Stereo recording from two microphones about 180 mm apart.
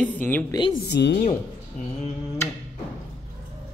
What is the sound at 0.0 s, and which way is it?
Speech, 10° left (ahead or behind).